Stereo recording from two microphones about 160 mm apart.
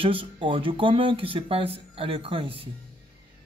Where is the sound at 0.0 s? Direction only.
30° right (ahead or behind).